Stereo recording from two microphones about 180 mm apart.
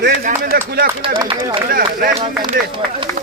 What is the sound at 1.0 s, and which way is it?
Speech, 30° right (ahead or behind).